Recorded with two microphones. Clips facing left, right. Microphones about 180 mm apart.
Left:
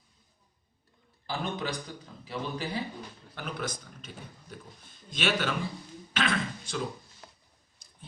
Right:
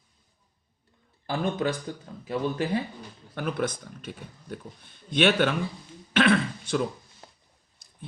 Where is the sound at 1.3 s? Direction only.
50° right (ahead or behind).